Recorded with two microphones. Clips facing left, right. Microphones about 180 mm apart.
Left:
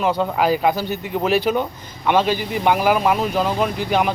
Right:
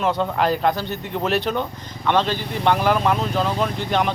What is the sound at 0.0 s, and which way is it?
Speech, 5° left (ahead or behind).